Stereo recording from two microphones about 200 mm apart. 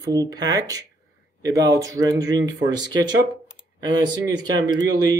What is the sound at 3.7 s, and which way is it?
Speech, 20° right (ahead or behind).